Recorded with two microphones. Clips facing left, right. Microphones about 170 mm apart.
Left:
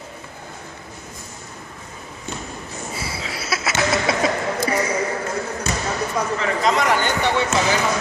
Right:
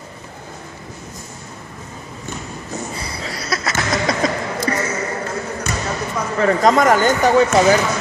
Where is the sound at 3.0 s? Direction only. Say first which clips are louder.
Right 1 dB; 5° left (ahead or behind).